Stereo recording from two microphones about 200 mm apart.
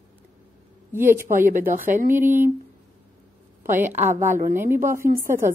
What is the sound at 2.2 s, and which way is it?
Speech, 10° right (ahead or behind).